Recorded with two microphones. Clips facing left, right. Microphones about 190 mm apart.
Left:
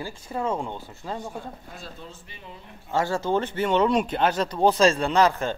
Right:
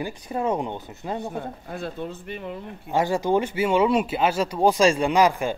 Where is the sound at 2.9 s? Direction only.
15° right (ahead or behind).